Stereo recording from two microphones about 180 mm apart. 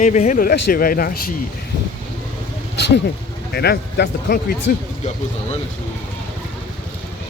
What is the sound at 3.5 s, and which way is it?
Speech, 65° left (ahead or behind).